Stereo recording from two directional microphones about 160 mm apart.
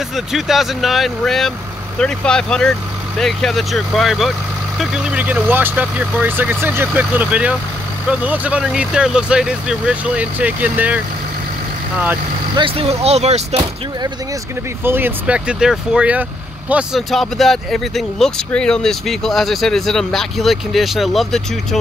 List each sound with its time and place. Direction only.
0.1 s speech: centre (ahead or behind)
12.5 s speech: 35° right (ahead or behind)
14.8 s speech: 15° right (ahead or behind)